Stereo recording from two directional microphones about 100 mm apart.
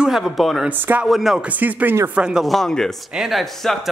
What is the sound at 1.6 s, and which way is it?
Speech, 15° right (ahead or behind).